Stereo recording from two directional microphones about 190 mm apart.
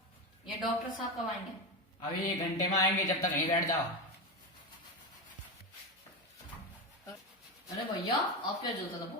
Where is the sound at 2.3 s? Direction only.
20° left (ahead or behind).